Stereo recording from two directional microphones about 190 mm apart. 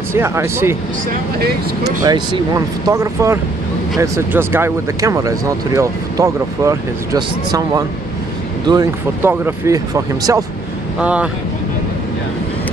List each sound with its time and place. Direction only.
0.1 s speech: 15° right (ahead or behind)
2.0 s speech: 20° right (ahead or behind)